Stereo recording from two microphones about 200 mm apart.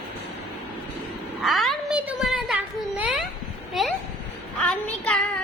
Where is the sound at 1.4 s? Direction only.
Centre (ahead or behind).